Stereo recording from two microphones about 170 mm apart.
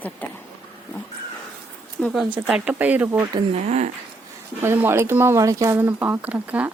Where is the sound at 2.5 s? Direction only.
10° right (ahead or behind).